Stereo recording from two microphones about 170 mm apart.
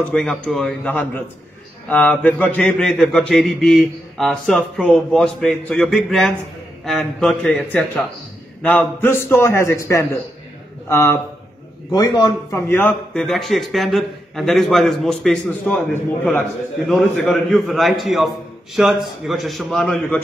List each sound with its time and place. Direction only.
0.1 s a man's voice: 5° left (ahead or behind)